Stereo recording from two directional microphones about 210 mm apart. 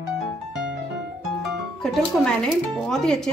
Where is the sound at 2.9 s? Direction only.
Centre (ahead or behind).